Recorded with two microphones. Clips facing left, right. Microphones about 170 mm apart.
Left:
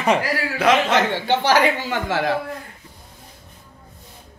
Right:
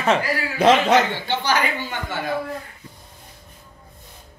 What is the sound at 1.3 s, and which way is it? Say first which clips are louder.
Speech: left 5 dB; 90° left.